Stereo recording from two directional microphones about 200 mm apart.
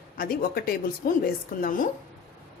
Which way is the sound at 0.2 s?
45° left (ahead or behind).